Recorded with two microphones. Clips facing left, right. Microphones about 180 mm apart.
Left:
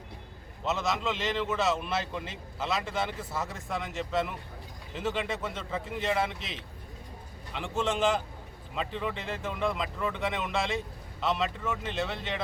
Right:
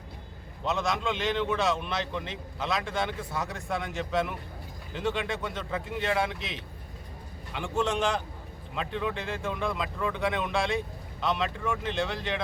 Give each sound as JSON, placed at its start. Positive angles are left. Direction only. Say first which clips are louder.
{"t": 0.6, "sound": "a man's voice", "louder": "right 1 dB", "side_deg": 0}